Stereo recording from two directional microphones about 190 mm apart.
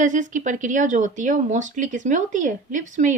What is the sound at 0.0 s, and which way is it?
Speech, 40° right (ahead or behind).